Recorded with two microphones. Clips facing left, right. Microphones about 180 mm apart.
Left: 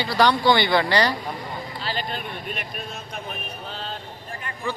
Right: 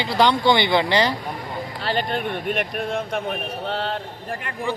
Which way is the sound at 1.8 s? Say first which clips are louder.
Right 7 dB; 60° right (ahead or behind).